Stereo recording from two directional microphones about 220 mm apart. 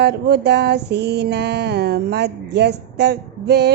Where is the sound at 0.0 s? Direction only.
45° right (ahead or behind).